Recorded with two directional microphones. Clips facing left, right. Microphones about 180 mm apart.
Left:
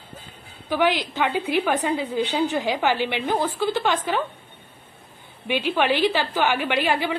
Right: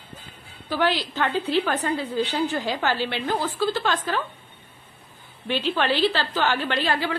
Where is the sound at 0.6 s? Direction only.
15° left (ahead or behind).